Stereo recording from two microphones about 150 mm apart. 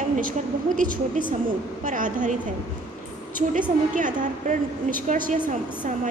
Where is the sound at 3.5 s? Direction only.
60° right (ahead or behind).